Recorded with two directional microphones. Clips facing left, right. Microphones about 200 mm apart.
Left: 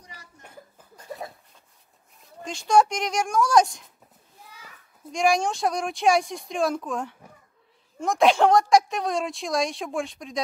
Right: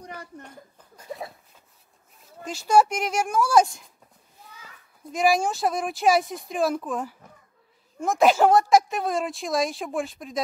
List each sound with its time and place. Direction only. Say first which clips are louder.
0.0 s a sound: right 11 dB; 55° right (ahead or behind)
2.1 s speech: right 1 dB; centre (ahead or behind)
4.6 s children playing: even; 10° left (ahead or behind)
5.1 s a woman's voice: right 1 dB; 5° right (ahead or behind)